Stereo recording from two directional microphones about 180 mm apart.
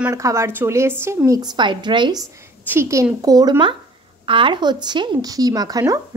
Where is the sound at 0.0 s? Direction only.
15° right (ahead or behind).